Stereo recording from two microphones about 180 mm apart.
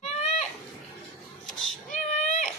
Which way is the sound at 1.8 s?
45° left (ahead or behind).